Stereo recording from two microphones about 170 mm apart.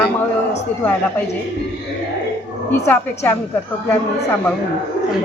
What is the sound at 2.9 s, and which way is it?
Speech, 10° left (ahead or behind).